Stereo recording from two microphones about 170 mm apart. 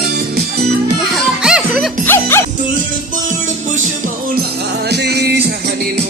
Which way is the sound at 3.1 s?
50° right (ahead or behind).